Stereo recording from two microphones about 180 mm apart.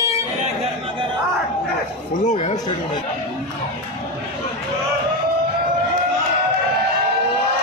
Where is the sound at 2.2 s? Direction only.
40° left (ahead or behind).